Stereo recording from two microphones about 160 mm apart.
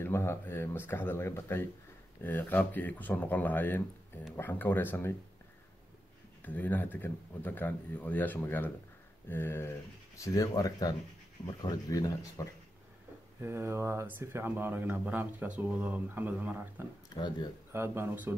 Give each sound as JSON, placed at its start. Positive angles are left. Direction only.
{"t": 0.0, "sound": "speech", "side_deg": 15}
{"t": 6.4, "sound": "speech", "side_deg": 10}
{"t": 13.4, "sound": "speech", "side_deg": -15}